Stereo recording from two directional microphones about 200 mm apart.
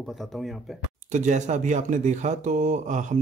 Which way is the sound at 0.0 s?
Centre (ahead or behind).